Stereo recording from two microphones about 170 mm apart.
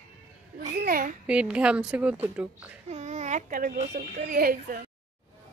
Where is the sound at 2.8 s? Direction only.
40° right (ahead or behind).